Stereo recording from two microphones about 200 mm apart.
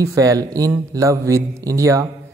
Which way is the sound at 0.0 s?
15° right (ahead or behind).